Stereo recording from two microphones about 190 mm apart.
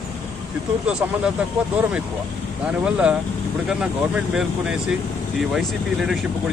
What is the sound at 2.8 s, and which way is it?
Speech, 5° right (ahead or behind).